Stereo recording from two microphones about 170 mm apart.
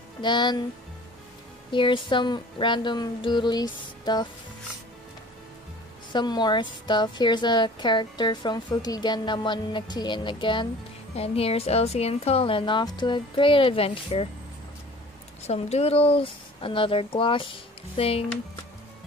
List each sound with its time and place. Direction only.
0.2 s a woman's voice: 25° left (ahead or behind)
1.7 s a woman's voice: 30° left (ahead or behind)
6.1 s a woman's voice: 25° left (ahead or behind)
15.4 s a woman's voice: 40° left (ahead or behind)